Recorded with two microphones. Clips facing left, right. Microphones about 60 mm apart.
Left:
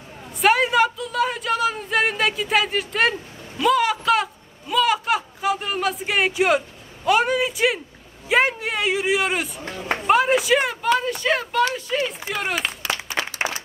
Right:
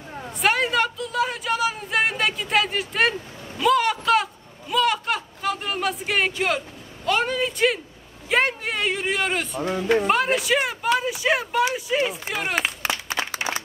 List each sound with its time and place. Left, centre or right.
0.3 s a sound: centre
7.1 s speech: centre
12.8 s applause: right